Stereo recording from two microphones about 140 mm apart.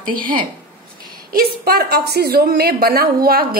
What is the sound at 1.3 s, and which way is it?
A woman's voice, 90° right.